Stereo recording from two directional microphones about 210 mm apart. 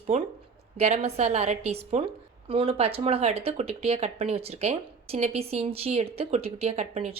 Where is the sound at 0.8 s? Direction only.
30° right (ahead or behind).